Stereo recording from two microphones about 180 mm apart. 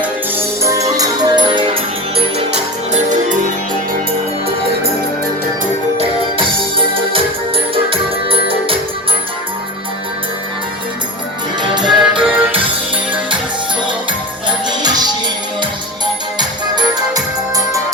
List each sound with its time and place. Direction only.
0.0 s music: 15° right (ahead or behind)
2.9 s music: 45° right (ahead or behind)
6.0 s music: 30° right (ahead or behind)
8.4 s music: 30° right (ahead or behind)
11.7 s music: 25° right (ahead or behind)
14.7 s music: 20° right (ahead or behind)
16.4 s music: 20° right (ahead or behind)